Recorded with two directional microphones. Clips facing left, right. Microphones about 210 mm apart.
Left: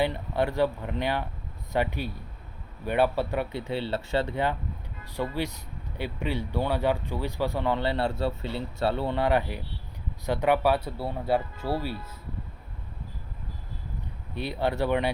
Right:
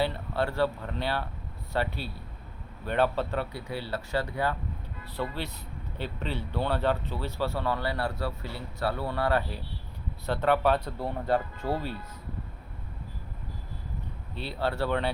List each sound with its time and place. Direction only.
0.0 s speech: 15° left (ahead or behind)
3.5 s speech: 25° left (ahead or behind)
5.1 s speech: 10° left (ahead or behind)
14.3 s speech: 15° left (ahead or behind)